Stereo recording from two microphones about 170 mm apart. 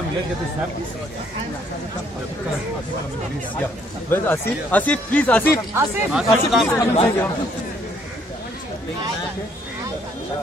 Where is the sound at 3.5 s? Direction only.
10° left (ahead or behind).